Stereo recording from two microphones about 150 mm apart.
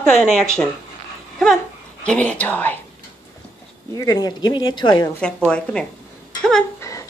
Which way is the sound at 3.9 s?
25° left (ahead or behind).